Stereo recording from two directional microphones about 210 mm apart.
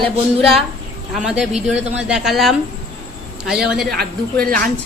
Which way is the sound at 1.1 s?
5° right (ahead or behind).